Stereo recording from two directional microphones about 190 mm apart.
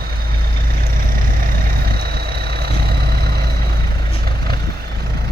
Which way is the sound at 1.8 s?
55° right (ahead or behind).